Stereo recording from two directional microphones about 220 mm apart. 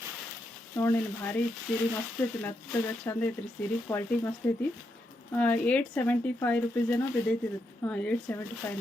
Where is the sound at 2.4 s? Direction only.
10° left (ahead or behind).